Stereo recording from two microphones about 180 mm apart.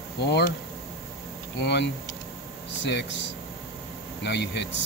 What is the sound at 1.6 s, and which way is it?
Speech, 70° left (ahead or behind).